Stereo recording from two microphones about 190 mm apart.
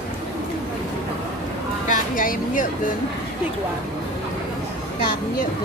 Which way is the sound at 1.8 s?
45° left (ahead or behind).